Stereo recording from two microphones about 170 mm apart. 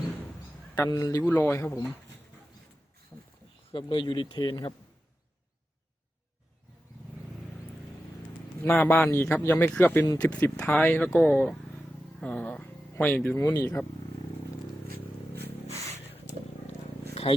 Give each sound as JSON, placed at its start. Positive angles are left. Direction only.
{"t": 0.9, "sound": "speech", "side_deg": 20}
{"t": 1.2, "sound": "speech", "side_deg": 10}
{"t": 3.7, "sound": "speech", "side_deg": 30}
{"t": 8.6, "sound": "speech", "side_deg": 15}
{"t": 15.6, "sound": "a sound", "side_deg": -40}
{"t": 17.2, "sound": "a sound", "side_deg": 40}